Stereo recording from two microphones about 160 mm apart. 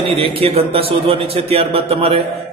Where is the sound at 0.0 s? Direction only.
35° right (ahead or behind).